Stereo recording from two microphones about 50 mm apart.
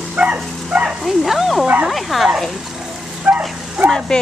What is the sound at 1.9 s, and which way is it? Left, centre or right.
Bow-wow, centre.